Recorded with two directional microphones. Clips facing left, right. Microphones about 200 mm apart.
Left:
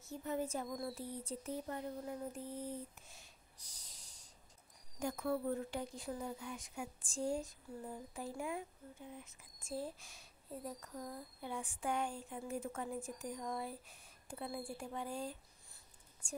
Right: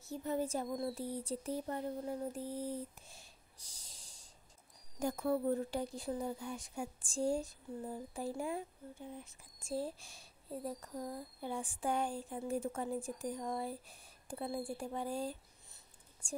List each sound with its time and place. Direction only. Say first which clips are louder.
0.1 s speech: right 3 dB; 35° right (ahead or behind)